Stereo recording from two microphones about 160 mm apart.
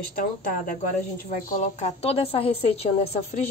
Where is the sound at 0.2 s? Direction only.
60° left (ahead or behind).